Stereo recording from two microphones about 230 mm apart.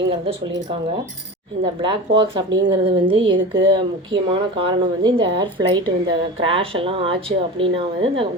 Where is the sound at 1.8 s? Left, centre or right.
Right.